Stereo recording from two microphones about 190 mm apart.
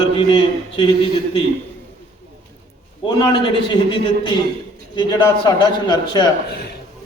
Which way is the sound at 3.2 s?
25° left (ahead or behind).